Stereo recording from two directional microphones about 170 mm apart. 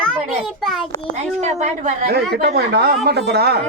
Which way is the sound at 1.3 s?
40° right (ahead or behind).